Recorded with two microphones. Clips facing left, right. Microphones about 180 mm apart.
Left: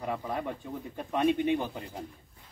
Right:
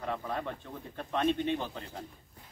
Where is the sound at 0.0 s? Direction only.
10° left (ahead or behind).